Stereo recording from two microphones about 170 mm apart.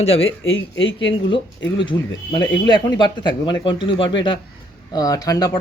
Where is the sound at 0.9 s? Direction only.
30° left (ahead or behind).